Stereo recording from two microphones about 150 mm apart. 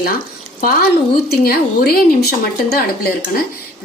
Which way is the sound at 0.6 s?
75° left (ahead or behind).